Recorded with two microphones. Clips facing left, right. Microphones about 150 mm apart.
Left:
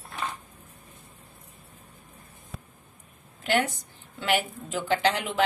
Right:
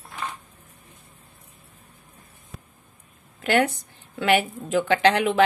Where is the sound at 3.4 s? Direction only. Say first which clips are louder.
Right 5 dB; 65° right (ahead or behind).